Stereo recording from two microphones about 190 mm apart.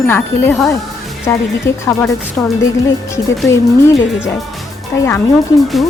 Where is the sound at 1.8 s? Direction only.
5° left (ahead or behind).